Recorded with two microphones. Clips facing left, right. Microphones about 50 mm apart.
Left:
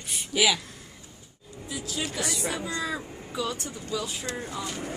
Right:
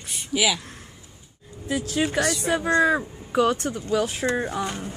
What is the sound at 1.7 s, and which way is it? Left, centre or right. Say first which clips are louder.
Speech: right 9 dB; right.